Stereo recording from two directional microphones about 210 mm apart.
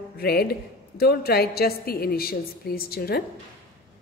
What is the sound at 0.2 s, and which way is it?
A woman's voice, 50° left (ahead or behind).